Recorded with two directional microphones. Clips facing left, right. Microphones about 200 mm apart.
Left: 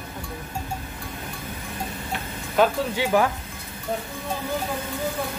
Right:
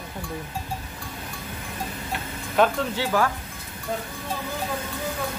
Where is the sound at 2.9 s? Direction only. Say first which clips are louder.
Left 2 dB; 15° left (ahead or behind).